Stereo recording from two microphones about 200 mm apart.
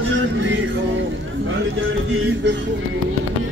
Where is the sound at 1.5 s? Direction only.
75° right (ahead or behind).